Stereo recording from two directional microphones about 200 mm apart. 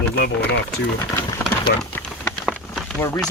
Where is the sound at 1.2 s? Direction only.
20° left (ahead or behind).